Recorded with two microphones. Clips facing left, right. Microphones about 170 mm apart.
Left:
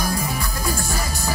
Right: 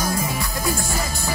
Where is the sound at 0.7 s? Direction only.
20° right (ahead or behind).